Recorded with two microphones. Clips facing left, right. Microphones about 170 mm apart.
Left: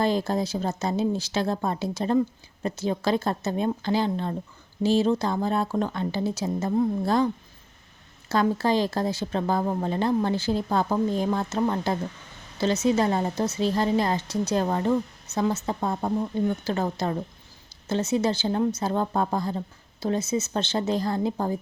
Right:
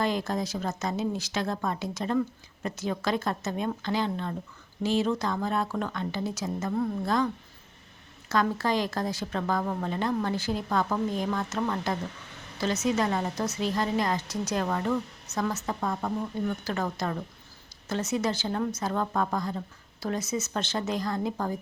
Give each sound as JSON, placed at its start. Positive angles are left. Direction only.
{"t": 0.0, "sound": "a woman's voice", "side_deg": 30}
{"t": 8.3, "sound": "a woman's voice", "side_deg": 30}